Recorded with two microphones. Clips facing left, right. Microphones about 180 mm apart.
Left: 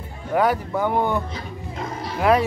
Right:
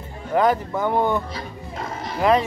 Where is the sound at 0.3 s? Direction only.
10° left (ahead or behind).